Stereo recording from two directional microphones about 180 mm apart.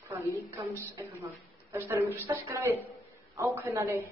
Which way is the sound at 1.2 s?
10° right (ahead or behind).